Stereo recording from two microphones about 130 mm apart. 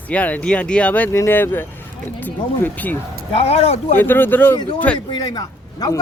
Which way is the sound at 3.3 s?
50° left (ahead or behind).